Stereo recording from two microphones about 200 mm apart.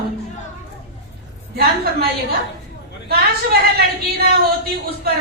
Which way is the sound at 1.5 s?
50° right (ahead or behind).